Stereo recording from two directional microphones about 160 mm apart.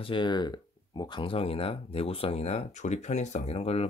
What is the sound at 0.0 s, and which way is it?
Speech, 30° left (ahead or behind).